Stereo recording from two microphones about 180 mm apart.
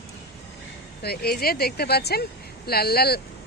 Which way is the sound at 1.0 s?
60° left (ahead or behind).